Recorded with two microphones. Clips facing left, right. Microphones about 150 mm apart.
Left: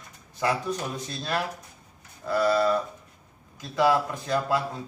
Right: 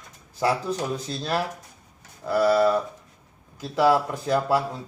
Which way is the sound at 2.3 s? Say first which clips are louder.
Right 3 dB; 10° right (ahead or behind).